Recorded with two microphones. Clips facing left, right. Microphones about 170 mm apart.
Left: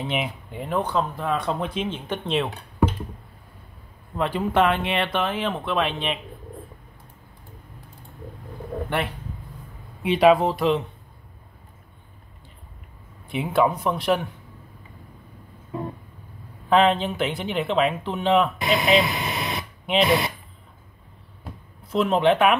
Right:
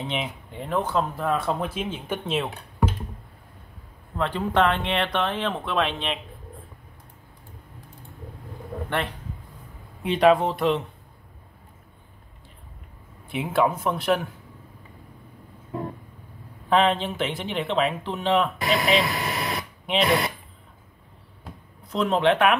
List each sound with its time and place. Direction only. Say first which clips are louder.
0.0 s speech: left 2 dB; 5° left (ahead or behind)
4.2 s speech: left 1 dB; 10° left (ahead or behind)
10.0 s speech: left 2 dB; 5° left (ahead or behind)
13.3 s speech: left 2 dB; centre (ahead or behind)
16.6 s speech: left 2 dB; centre (ahead or behind)
19.1 s radio: even; 20° left (ahead or behind)
19.5 s a sound: left 2 dB; centre (ahead or behind)
21.8 s speech: left 2 dB; centre (ahead or behind)